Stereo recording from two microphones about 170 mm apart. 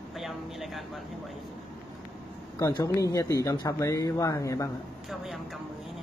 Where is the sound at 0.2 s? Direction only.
Centre (ahead or behind).